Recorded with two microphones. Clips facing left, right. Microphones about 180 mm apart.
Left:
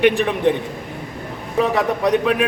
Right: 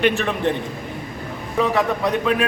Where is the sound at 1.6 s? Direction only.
15° left (ahead or behind).